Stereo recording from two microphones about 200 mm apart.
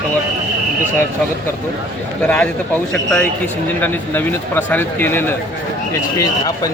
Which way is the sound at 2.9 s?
5° left (ahead or behind).